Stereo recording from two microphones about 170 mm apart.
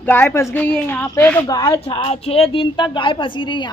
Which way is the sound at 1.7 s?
35° left (ahead or behind).